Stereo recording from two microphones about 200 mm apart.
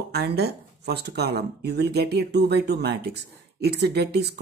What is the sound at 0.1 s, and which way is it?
Speech, 55° right (ahead or behind).